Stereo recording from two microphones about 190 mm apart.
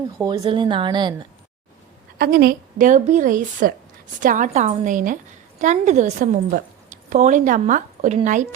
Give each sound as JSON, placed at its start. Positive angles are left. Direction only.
{"t": 0.2, "sound": "speech", "side_deg": -20}
{"t": 2.1, "sound": "speech", "side_deg": -55}